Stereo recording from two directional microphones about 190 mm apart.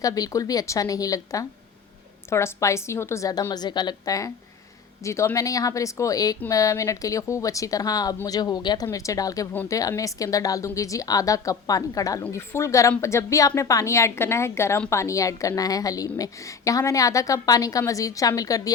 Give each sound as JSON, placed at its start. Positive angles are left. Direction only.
{"t": 0.0, "sound": "speech", "side_deg": 20}